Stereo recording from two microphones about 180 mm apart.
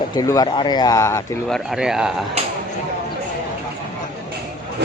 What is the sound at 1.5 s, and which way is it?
Speech, centre (ahead or behind).